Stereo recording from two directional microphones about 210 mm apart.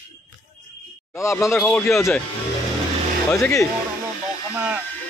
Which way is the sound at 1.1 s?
15° left (ahead or behind).